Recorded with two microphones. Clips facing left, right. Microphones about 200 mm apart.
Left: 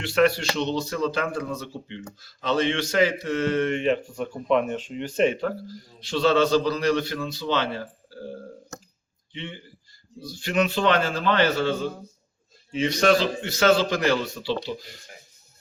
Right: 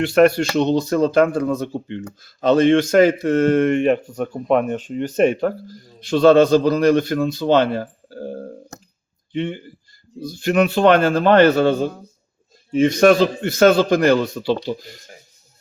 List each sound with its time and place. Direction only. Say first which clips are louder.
0.0 s speech: right 7 dB; 50° right (ahead or behind)